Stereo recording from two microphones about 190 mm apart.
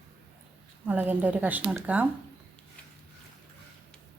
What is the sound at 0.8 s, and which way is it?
A woman's voice, 10° right (ahead or behind).